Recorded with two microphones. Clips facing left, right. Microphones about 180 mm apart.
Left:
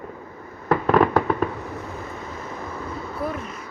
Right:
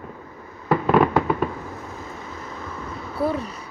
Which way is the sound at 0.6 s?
5° right (ahead or behind).